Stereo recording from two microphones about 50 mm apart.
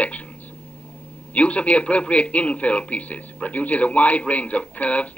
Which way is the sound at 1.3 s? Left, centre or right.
Left.